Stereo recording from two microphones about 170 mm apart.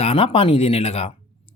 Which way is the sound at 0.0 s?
35° left (ahead or behind).